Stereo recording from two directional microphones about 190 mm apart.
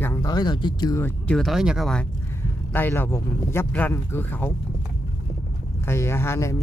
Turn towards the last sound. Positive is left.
turn(degrees=15)  # may be behind; listen again after turning